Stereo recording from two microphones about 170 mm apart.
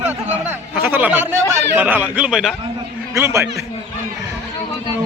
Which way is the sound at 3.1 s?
15° right (ahead or behind).